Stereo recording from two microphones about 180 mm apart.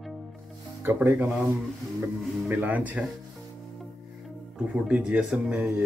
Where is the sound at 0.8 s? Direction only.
10° right (ahead or behind).